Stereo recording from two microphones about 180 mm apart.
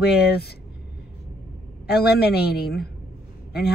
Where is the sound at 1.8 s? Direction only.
60° left (ahead or behind).